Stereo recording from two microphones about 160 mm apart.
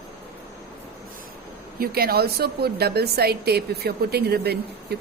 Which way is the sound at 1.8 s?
70° right (ahead or behind).